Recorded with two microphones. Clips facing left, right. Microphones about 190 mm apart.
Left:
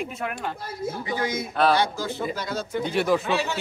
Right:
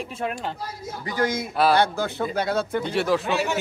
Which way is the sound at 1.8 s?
60° right (ahead or behind).